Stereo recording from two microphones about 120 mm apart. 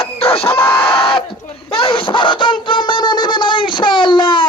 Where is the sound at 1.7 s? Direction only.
50° left (ahead or behind).